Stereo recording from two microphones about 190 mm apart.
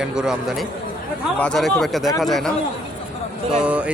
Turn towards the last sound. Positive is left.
turn(degrees=-5)  # may be behind; listen again after turning